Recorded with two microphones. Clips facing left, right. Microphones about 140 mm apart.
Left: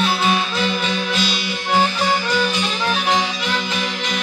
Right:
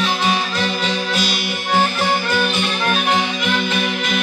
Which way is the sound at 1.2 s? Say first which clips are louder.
Right 1 dB; 50° right (ahead or behind).